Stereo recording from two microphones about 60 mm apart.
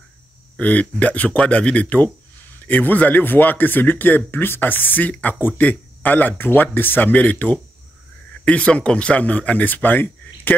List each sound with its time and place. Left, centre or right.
0.6 s speech: left